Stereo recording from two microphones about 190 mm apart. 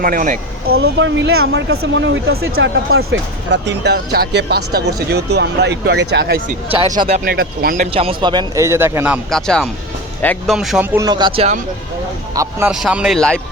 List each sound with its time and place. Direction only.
0.0 s speech: 45° right (ahead or behind)
0.7 s speech: 70° right (ahead or behind); by 7.9 s 50° right (ahead or behind)
7.9 s a man's voice: 25° right (ahead or behind); by 9.4 s 5° right (ahead or behind)
10.2 s speech: 5° left (ahead or behind)
10.9 s speech: 20° right (ahead or behind)
12.3 s a man's voice: 15° right (ahead or behind)
12.7 s speech: 5° right (ahead or behind)